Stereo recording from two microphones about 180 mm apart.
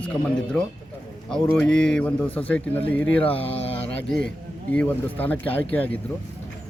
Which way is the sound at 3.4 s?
30° left (ahead or behind).